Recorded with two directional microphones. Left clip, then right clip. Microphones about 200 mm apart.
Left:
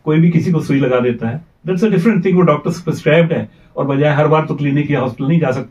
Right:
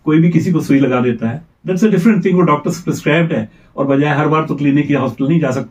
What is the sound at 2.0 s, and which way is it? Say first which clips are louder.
A man's voice: even; 15° left (ahead or behind).